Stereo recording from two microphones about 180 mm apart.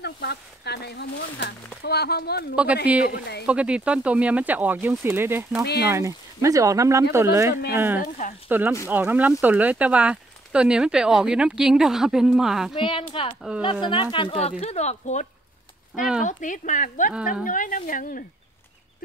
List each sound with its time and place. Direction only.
0.0 s speech: 65° left (ahead or behind)
2.5 s speech: 5° right (ahead or behind)
3.1 s speech: 65° left (ahead or behind)
3.4 s speech: 5° right (ahead or behind)
12.7 s speech: 30° left (ahead or behind); by 18.2 s 50° left (ahead or behind)